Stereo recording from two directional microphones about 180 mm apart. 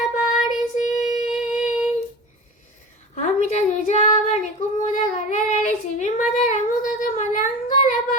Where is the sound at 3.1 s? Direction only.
40° left (ahead or behind).